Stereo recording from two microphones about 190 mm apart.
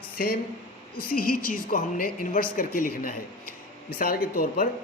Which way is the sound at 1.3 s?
45° left (ahead or behind).